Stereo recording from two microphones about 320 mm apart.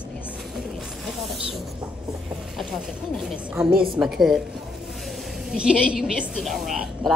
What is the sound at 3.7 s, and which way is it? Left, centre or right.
Speech, right.